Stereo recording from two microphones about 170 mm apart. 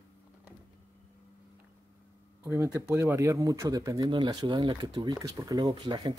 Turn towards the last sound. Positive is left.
turn(degrees=-25)  # may be behind; listen again after turning